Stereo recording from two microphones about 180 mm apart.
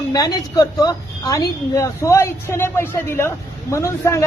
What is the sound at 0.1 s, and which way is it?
A woman's voice, 20° left (ahead or behind).